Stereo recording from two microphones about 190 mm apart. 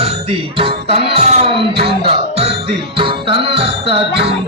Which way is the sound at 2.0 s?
30° right (ahead or behind).